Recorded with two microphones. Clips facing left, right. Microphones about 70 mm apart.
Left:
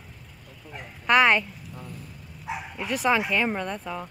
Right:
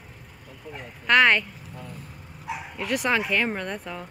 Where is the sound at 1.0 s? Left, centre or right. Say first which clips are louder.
Even; centre.